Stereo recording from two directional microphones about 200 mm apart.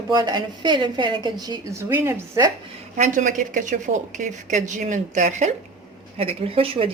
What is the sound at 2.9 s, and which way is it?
Speech, 40° right (ahead or behind).